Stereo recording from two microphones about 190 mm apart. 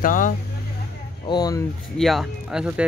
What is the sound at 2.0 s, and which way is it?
Speech, centre (ahead or behind).